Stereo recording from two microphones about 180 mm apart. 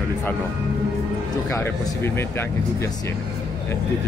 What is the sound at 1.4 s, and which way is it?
A man's voice, 15° left (ahead or behind).